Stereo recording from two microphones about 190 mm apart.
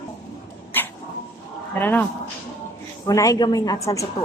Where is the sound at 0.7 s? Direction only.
10° left (ahead or behind).